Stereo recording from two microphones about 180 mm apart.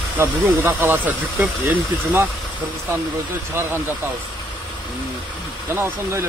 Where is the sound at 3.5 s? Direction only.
15° right (ahead or behind).